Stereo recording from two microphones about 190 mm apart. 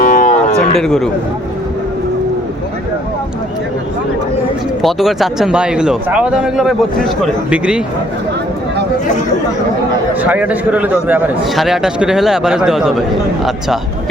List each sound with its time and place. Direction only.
0.0 s cattle: 45° left (ahead or behind)
0.8 s a man's voice: centre (ahead or behind)
4.8 s a man's voice: centre (ahead or behind)
10.2 s a man's voice: 10° right (ahead or behind)